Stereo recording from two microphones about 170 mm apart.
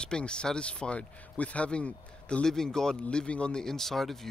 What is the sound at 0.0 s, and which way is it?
Speech, 5° left (ahead or behind).